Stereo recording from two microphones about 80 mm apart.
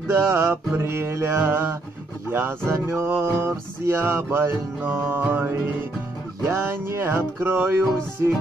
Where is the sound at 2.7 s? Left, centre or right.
Right.